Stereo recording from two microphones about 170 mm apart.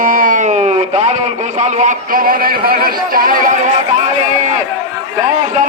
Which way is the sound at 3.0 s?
55° right (ahead or behind).